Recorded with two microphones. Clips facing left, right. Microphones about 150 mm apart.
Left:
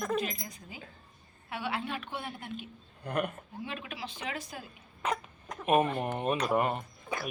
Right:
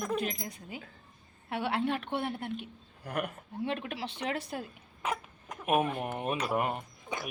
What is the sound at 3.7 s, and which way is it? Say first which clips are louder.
Speech: right 5 dB; 60° right (ahead or behind).